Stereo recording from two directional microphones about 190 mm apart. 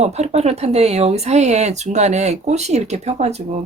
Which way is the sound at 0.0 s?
35° right (ahead or behind).